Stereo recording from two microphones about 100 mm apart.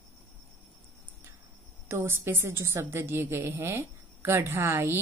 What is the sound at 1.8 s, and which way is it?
A woman's voice, 25° right (ahead or behind).